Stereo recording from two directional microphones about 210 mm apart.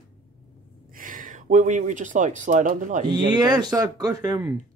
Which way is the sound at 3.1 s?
20° right (ahead or behind).